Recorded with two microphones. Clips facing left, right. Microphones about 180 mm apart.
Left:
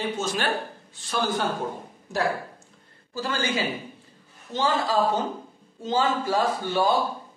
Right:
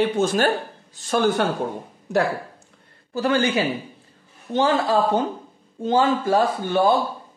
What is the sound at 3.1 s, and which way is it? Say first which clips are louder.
A woman's voice: right 7 dB; 60° right (ahead or behind).